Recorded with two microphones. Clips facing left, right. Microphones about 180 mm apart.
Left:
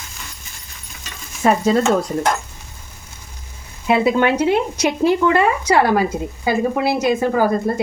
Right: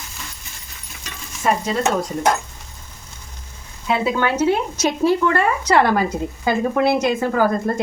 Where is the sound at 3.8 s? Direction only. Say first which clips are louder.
Left 4 dB; 15° left (ahead or behind).